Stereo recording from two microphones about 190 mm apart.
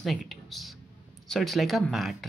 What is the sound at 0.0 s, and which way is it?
Speech, centre (ahead or behind).